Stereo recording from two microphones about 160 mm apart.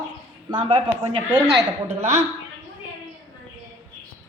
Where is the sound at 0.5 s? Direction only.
30° right (ahead or behind).